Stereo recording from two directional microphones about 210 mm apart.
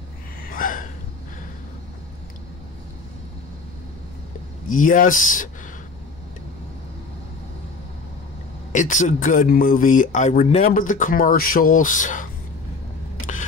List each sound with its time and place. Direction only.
0.5 s gasp: 40° left (ahead or behind)
4.6 s speech: 40° left (ahead or behind)
8.7 s speech: 35° left (ahead or behind)